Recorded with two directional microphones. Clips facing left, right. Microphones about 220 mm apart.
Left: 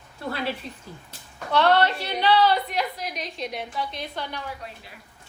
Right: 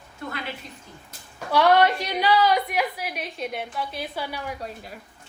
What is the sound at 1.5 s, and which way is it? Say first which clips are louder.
A woman's voice: right 2 dB; 10° right (ahead or behind).